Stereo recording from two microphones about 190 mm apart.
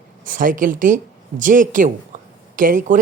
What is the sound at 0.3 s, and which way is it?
A woman's voice, 45° right (ahead or behind).